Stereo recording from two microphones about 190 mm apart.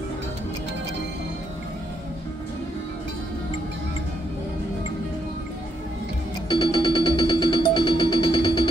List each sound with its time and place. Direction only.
6.5 s music: 25° left (ahead or behind)